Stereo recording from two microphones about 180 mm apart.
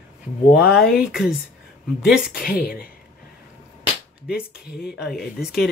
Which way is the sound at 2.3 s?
55° left (ahead or behind).